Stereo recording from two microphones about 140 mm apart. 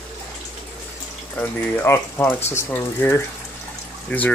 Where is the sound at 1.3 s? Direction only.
15° left (ahead or behind).